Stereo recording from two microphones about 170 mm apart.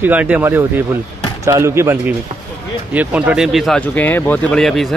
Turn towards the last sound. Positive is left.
turn(degrees=0)  # may be behind; listen again after turning